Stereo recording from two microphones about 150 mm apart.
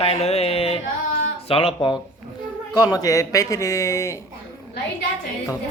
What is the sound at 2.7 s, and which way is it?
Speech, 25° left (ahead or behind).